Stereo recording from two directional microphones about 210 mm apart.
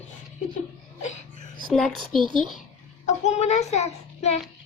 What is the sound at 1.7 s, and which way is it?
Speech, centre (ahead or behind).